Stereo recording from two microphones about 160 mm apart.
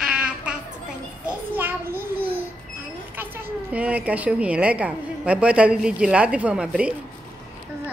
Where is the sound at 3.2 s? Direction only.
10° right (ahead or behind).